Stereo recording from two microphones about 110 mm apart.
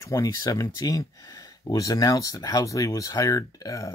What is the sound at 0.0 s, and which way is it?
Speech, 30° left (ahead or behind).